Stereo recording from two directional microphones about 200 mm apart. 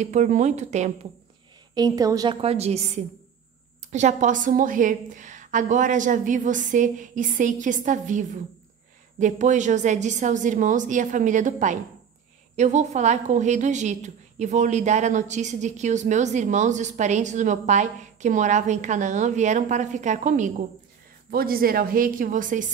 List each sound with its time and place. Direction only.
0.0 s a woman's voice: 35° right (ahead or behind)
1.8 s a woman's voice: 20° right (ahead or behind)
2.4 s a woman's voice: 30° right (ahead or behind)
3.9 s a woman's voice: 35° right (ahead or behind)